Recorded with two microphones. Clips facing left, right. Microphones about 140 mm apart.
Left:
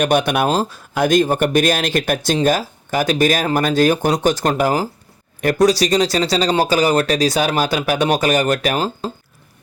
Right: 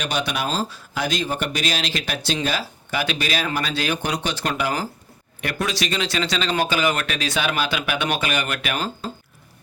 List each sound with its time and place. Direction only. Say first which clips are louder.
0.0 s speech: left 9 dB; 50° left (ahead or behind)